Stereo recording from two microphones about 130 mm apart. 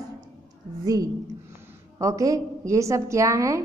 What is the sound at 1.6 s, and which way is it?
A woman's voice, 25° right (ahead or behind).